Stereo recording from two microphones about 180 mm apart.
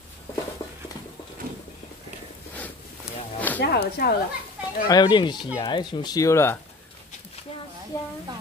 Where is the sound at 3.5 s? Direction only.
60° left (ahead or behind).